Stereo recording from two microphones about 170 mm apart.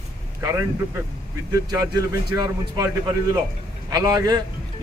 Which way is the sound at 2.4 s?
20° right (ahead or behind).